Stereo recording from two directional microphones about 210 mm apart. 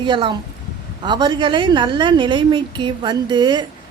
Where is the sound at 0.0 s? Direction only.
20° right (ahead or behind).